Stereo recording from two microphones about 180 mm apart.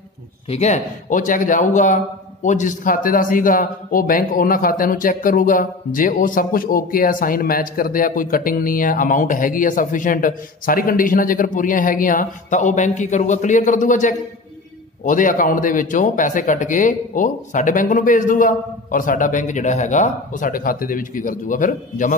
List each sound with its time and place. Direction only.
0.5 s a man's voice: 40° left (ahead or behind)